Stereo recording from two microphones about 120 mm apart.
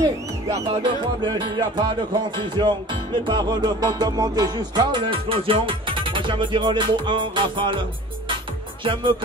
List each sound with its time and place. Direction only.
0.0 s speech: 30° right (ahead or behind)
1.0 s music: 40° right (ahead or behind)
8.8 s speech: 45° right (ahead or behind)